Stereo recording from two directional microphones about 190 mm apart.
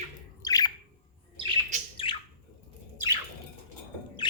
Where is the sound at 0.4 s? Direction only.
20° left (ahead or behind).